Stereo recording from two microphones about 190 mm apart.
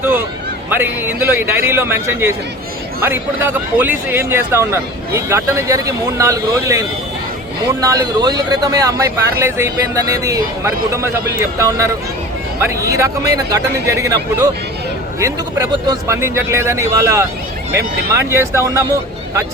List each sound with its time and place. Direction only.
0.7 s speech: 10° right (ahead or behind)
12.6 s speech: 15° right (ahead or behind)
18.3 s speech: 15° right (ahead or behind)